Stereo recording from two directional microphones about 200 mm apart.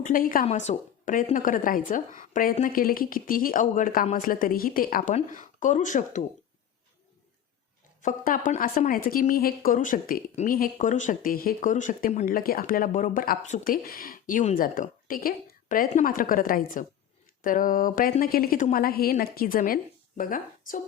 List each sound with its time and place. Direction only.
0.0 s a woman's voice: 45° left (ahead or behind)
8.0 s a woman's voice: 40° left (ahead or behind)